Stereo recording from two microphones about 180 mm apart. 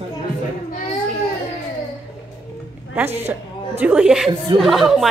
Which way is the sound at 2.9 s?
10° right (ahead or behind).